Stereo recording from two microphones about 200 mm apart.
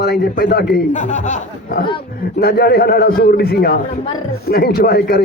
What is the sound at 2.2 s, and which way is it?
A man's voice, 50° left (ahead or behind).